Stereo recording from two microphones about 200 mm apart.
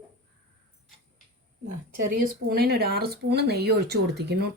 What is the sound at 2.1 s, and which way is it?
Speech, 50° right (ahead or behind).